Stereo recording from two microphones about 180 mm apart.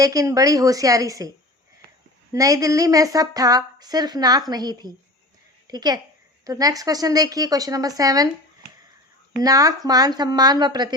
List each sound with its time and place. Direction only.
0.0 s a woman's voice: 20° right (ahead or behind)
2.3 s a woman's voice: 20° right (ahead or behind)
9.4 s a woman's voice: 20° right (ahead or behind)